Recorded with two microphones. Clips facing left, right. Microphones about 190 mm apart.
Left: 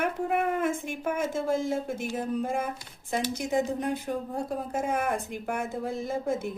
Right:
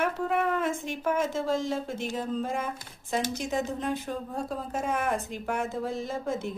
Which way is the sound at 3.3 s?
55° left (ahead or behind).